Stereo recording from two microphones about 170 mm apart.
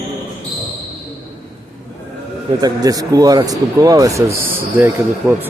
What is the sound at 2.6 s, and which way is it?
Speech, 20° right (ahead or behind).